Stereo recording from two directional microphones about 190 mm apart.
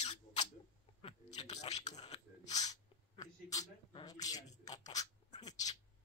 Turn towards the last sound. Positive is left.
turn(degrees=20)  # may be behind; listen again after turning